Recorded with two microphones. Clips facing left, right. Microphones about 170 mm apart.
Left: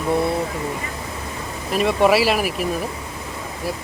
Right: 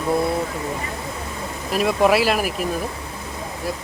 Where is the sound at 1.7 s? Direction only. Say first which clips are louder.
Left 1 dB; centre (ahead or behind).